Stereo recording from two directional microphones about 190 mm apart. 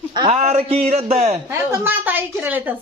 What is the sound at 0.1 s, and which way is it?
Speech, 25° right (ahead or behind).